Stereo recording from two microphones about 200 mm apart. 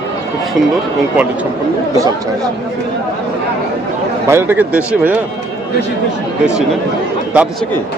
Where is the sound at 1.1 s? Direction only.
5° right (ahead or behind).